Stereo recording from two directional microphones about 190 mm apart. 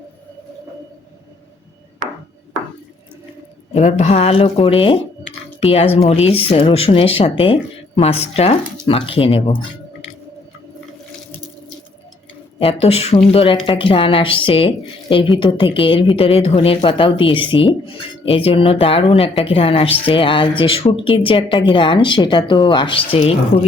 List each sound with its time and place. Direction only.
3.8 s speech: 35° left (ahead or behind)
12.5 s speech: 30° left (ahead or behind)